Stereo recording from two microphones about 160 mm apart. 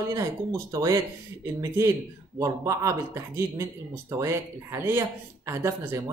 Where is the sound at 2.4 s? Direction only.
20° right (ahead or behind).